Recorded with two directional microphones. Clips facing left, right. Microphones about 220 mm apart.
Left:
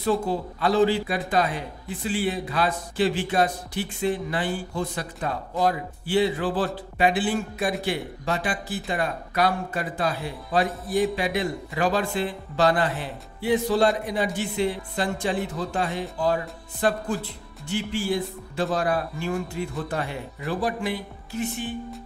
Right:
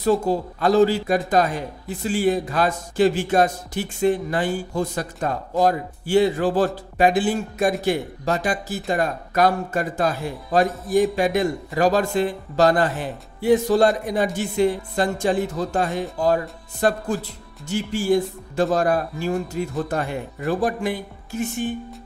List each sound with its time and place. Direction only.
0.0 s speech: 40° right (ahead or behind)